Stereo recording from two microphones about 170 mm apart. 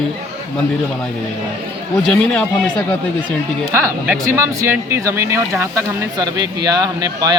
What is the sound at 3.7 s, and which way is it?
Speech, 15° right (ahead or behind).